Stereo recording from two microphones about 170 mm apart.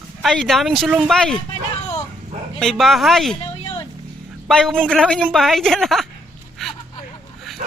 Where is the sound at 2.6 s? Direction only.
Centre (ahead or behind).